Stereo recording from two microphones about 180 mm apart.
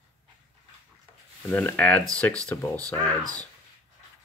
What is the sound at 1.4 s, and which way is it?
Speech, 10° left (ahead or behind).